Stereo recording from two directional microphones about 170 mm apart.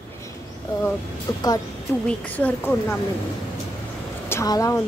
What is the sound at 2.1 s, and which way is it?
Speech, 10° left (ahead or behind).